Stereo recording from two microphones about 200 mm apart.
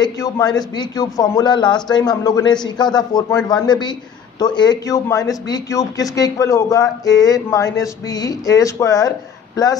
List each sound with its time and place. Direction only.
0.0 s a man's voice: 20° left (ahead or behind)